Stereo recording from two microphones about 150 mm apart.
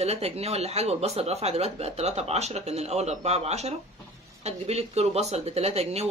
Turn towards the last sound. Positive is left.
turn(degrees=-45)  # may be behind; listen again after turning